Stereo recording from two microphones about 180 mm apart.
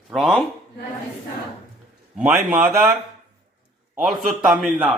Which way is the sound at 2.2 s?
10° right (ahead or behind).